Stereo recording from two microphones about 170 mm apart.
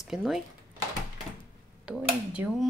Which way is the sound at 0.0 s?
Centre (ahead or behind).